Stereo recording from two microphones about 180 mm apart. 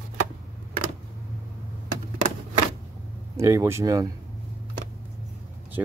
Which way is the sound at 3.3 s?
15° right (ahead or behind).